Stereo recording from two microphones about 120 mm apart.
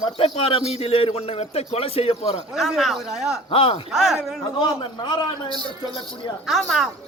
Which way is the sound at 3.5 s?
50° left (ahead or behind).